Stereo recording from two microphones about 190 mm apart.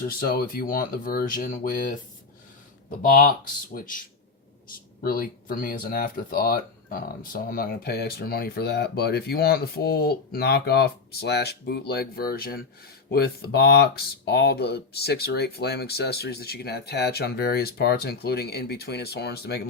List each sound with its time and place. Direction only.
0.0 s speech: 50° left (ahead or behind)
3.0 s speech: 50° left (ahead or behind)
5.0 s speech: 50° left (ahead or behind)